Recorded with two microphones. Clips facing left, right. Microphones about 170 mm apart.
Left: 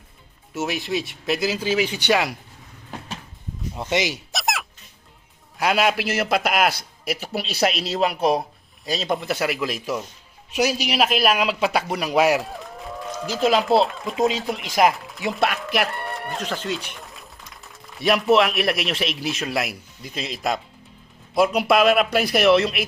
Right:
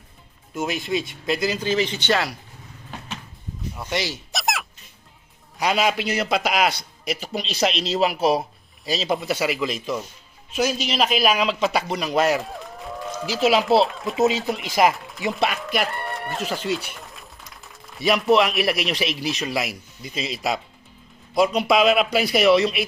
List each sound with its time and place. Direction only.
0.5 s a man's voice: 5° left (ahead or behind)
3.8 s speech: 20° left (ahead or behind)
4.3 s a sound: centre (ahead or behind)
5.5 s a man's voice: centre (ahead or behind)
13.0 s a man's voice: 5° right (ahead or behind)